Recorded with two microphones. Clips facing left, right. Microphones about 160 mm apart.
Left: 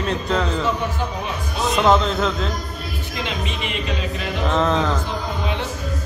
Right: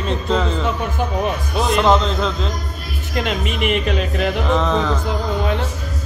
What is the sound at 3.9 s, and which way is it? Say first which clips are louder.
Music: right 6 dB; 65° right (ahead or behind).